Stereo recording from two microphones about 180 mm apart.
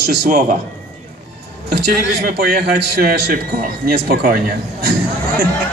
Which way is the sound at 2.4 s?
55° right (ahead or behind).